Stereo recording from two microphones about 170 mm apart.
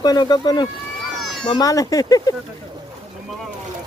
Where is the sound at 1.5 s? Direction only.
20° left (ahead or behind).